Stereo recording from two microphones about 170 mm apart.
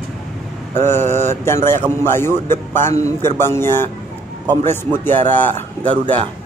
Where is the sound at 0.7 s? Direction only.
15° left (ahead or behind).